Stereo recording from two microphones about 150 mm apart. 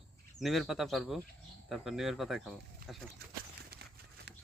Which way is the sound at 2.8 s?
75° right (ahead or behind).